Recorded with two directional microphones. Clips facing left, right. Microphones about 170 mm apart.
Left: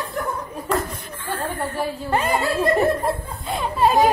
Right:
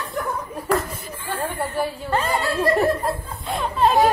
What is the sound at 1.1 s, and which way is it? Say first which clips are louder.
A woman's voice: even; 10° right (ahead or behind).